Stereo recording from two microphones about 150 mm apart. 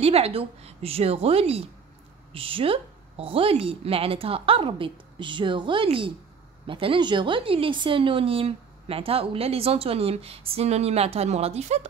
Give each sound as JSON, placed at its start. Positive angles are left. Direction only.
{"t": 0.0, "sound": "a woman's voice", "side_deg": -40}